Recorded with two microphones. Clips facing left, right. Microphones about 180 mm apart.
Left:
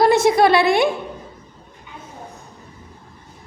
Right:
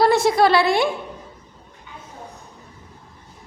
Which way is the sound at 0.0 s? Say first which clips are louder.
Left 2 dB; 20° left (ahead or behind).